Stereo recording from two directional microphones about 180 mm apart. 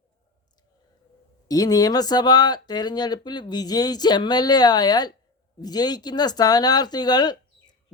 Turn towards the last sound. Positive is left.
turn(degrees=25)  # may be behind; listen again after turning